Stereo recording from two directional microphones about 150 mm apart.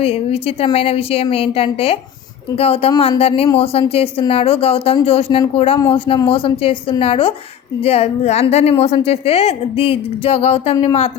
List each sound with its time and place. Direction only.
0.0 s a woman's voice: 40° left (ahead or behind)